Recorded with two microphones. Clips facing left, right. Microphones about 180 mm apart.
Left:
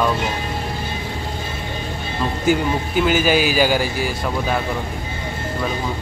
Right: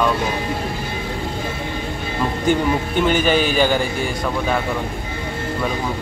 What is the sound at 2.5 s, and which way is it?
A man's voice, 5° left (ahead or behind).